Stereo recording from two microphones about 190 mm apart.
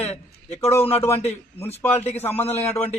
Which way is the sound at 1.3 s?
10° left (ahead or behind).